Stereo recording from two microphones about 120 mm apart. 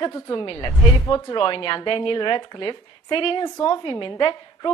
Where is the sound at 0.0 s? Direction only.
35° left (ahead or behind).